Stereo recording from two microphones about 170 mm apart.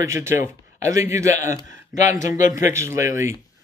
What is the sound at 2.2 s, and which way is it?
Speech, 45° left (ahead or behind).